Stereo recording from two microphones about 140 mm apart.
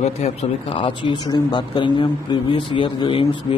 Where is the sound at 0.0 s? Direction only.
50° left (ahead or behind).